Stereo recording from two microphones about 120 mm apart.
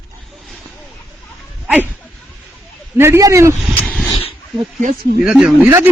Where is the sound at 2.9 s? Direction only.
20° right (ahead or behind).